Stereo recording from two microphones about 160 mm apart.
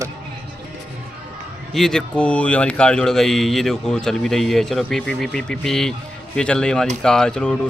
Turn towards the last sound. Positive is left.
turn(degrees=5)  # may be behind; listen again after turning